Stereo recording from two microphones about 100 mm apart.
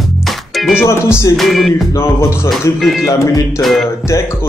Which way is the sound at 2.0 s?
30° left (ahead or behind).